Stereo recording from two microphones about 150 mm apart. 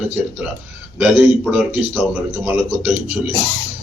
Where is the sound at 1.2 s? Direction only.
5° right (ahead or behind).